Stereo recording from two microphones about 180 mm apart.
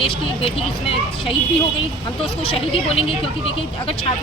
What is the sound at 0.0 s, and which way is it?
Speech, 30° left (ahead or behind).